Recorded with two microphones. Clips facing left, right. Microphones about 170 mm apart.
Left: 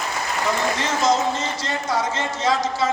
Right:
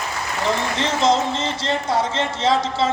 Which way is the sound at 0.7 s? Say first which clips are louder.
Right 4 dB; 30° right (ahead or behind).